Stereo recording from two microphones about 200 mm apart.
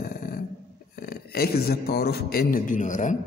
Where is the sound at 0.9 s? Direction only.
50° left (ahead or behind).